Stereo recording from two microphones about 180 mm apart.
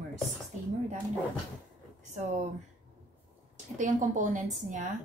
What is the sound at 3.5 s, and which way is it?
Speech, 45° right (ahead or behind).